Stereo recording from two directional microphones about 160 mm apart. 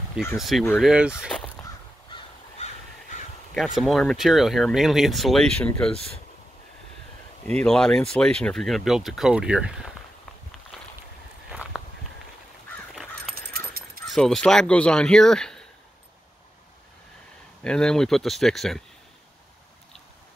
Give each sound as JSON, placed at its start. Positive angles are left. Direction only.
{"t": 0.4, "sound": "speech", "side_deg": 0}
{"t": 2.1, "sound": "crow", "side_deg": 45}
{"t": 3.5, "sound": "speech", "side_deg": 0}
{"t": 7.6, "sound": "speech", "side_deg": 5}
{"t": 10.7, "sound": "boat", "side_deg": 0}
{"t": 12.9, "sound": "caw", "side_deg": 0}
{"t": 14.0, "sound": "speech", "side_deg": 0}
{"t": 17.6, "sound": "speech", "side_deg": 5}